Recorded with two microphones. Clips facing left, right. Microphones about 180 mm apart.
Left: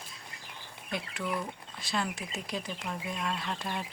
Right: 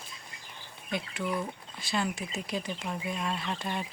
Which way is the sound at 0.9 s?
Centre (ahead or behind).